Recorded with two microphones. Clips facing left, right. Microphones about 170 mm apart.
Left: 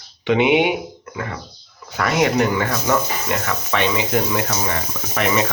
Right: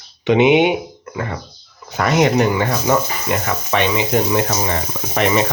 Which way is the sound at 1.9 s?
25° right (ahead or behind).